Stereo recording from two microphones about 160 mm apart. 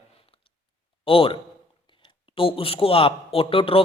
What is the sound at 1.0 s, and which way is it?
A man's voice, 35° left (ahead or behind).